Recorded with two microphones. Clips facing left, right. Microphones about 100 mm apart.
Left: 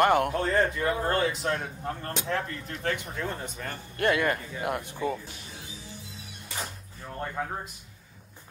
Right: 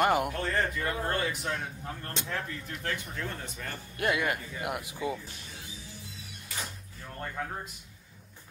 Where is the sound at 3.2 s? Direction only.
20° left (ahead or behind).